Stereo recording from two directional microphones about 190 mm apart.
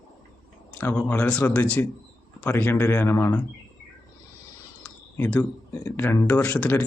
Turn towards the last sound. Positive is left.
turn(degrees=10)  # may be behind; listen again after turning